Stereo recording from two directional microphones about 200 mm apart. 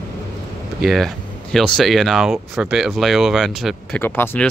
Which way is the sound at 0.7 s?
Centre (ahead or behind).